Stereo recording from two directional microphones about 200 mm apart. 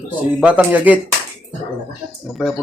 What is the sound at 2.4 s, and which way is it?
Speech, 5° right (ahead or behind).